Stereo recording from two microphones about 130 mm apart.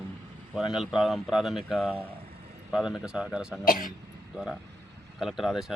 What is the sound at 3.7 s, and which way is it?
Speech, 90° left.